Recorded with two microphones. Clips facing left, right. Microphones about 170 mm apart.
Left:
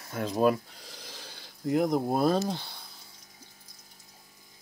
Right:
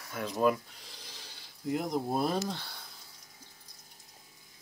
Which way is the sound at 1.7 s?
55° left (ahead or behind).